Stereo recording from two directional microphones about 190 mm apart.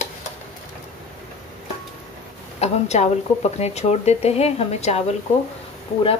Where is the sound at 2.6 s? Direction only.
35° left (ahead or behind).